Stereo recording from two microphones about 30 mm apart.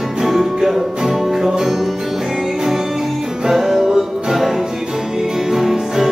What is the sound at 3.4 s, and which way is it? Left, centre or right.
Music, centre.